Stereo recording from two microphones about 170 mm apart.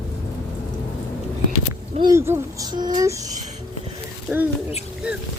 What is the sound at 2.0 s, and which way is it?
A child's voice, 20° right (ahead or behind).